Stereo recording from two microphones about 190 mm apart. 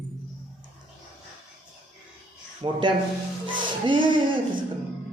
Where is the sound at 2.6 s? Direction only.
25° right (ahead or behind).